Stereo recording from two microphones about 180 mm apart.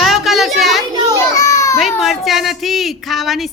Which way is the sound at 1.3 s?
15° left (ahead or behind).